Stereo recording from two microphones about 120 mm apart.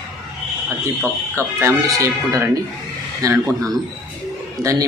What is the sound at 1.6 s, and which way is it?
Speech, 25° right (ahead or behind).